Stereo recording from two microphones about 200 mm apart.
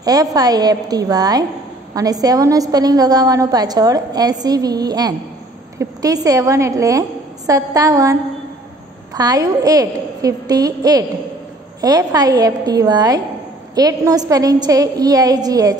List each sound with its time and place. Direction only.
0.0 s a woman's voice: 20° right (ahead or behind)